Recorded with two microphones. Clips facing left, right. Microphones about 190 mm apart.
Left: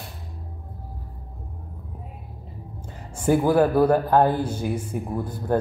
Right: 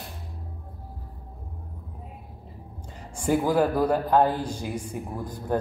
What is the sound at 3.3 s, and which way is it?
Speech, 60° left (ahead or behind).